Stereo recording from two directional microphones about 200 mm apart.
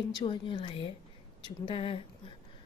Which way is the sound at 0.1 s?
25° left (ahead or behind).